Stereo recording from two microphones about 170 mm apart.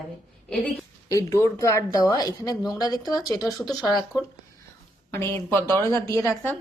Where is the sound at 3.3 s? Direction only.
Centre (ahead or behind).